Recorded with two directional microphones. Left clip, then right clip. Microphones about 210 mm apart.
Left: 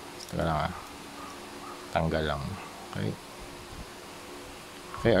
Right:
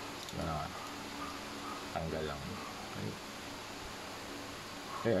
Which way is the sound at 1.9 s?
40° left (ahead or behind).